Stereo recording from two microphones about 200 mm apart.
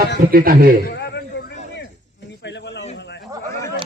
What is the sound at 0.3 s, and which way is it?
Speech, 45° right (ahead or behind).